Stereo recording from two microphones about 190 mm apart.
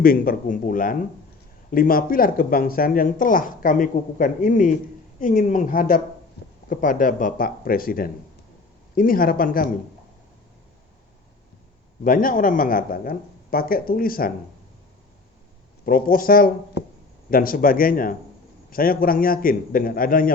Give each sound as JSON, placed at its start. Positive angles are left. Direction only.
{"t": 0.0, "sound": "speech", "side_deg": 50}
{"t": 12.0, "sound": "speech", "side_deg": 50}
{"t": 15.9, "sound": "speech", "side_deg": 50}